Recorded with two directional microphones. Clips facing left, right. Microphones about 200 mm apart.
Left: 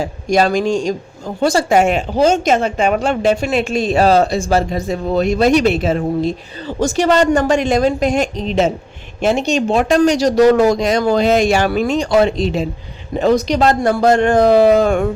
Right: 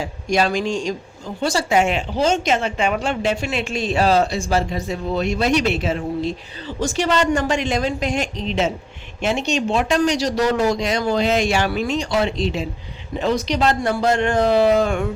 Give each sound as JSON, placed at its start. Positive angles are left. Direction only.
{"t": 0.0, "sound": "a woman's voice", "side_deg": 40}